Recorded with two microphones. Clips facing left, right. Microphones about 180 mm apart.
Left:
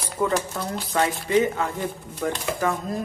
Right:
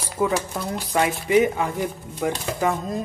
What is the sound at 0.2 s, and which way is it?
Speech, 5° right (ahead or behind).